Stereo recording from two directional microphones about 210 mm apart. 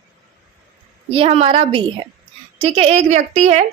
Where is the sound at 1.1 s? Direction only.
25° right (ahead or behind).